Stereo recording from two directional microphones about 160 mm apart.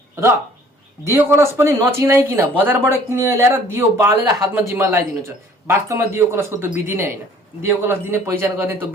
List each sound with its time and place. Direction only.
1.0 s speech: 15° right (ahead or behind)